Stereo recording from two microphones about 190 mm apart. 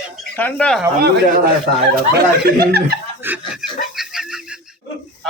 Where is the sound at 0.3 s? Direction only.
5° left (ahead or behind).